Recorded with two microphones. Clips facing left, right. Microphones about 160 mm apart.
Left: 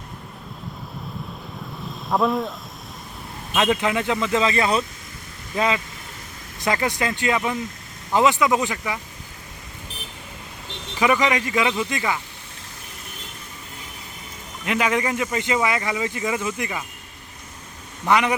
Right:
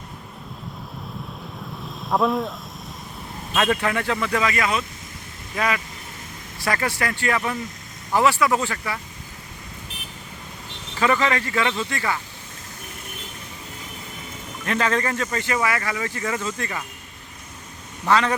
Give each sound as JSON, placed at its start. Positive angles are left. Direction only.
{"t": 1.8, "sound": "vehicle", "side_deg": 0}
{"t": 3.5, "sound": "speech", "side_deg": 15}
{"t": 11.0, "sound": "speech", "side_deg": 15}
{"t": 14.6, "sound": "speech", "side_deg": 15}
{"t": 18.0, "sound": "speech", "side_deg": 15}